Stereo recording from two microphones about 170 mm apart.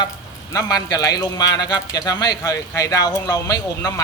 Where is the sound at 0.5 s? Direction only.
20° left (ahead or behind).